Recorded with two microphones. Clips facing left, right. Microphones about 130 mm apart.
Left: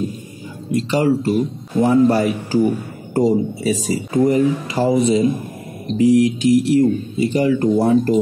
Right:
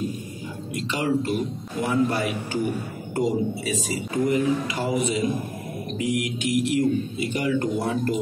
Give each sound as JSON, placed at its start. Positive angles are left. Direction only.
{"t": 0.7, "sound": "speech", "side_deg": 40}